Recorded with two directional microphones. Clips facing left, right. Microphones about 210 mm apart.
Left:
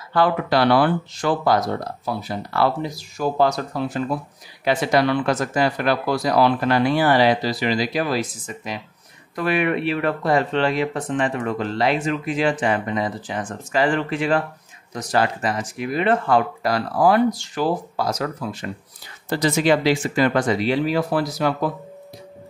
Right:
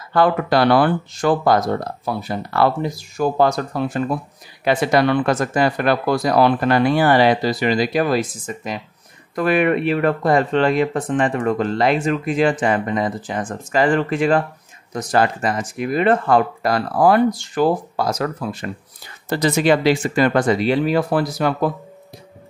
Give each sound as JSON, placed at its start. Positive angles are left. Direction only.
{"t": 0.1, "sound": "speech", "side_deg": -50}
{"t": 19.2, "sound": "speech", "side_deg": -55}